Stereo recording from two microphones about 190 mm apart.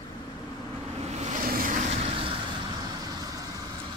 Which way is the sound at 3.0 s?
20° right (ahead or behind).